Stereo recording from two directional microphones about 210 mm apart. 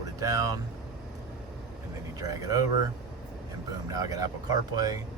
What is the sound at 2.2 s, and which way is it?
Speech, 15° right (ahead or behind).